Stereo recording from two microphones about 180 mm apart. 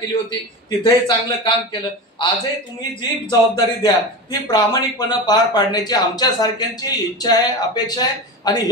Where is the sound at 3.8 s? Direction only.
25° left (ahead or behind).